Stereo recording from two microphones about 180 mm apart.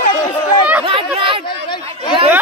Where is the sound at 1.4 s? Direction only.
25° left (ahead or behind).